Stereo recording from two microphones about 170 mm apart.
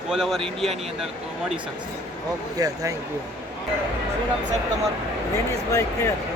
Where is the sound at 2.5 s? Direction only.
20° right (ahead or behind).